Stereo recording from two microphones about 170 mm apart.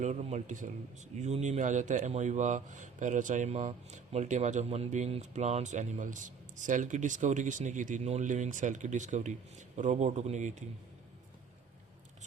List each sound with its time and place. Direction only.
0.0 s a man's voice: 45° right (ahead or behind)